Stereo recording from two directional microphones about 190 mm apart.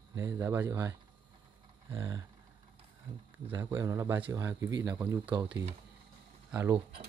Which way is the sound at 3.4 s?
15° right (ahead or behind).